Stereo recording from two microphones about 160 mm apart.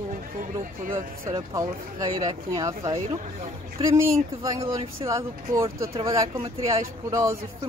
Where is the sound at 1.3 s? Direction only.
20° right (ahead or behind).